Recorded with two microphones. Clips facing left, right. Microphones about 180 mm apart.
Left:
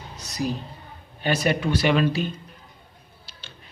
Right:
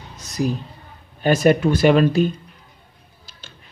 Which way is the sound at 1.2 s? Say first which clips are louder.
Right 8 dB; 45° right (ahead or behind).